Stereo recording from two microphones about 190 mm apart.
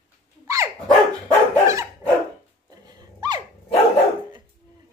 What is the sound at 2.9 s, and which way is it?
Dog, 25° right (ahead or behind).